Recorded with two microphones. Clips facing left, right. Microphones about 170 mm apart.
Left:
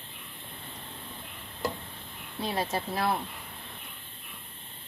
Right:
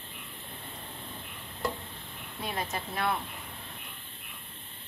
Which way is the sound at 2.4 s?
30° left (ahead or behind).